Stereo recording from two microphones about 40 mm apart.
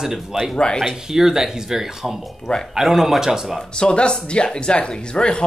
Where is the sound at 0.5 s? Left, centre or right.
Left.